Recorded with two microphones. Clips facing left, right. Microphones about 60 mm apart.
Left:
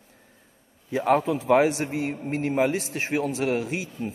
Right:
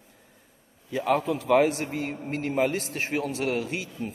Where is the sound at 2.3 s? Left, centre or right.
Left.